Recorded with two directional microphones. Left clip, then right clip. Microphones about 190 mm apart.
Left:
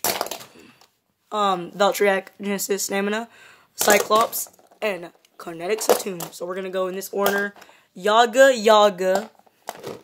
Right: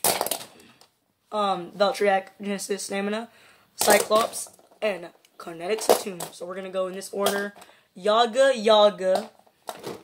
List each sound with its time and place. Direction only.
1.3 s speech: 45° left (ahead or behind)